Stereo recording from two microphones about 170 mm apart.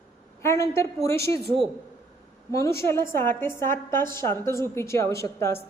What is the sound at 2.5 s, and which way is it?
A woman's voice, 15° left (ahead or behind).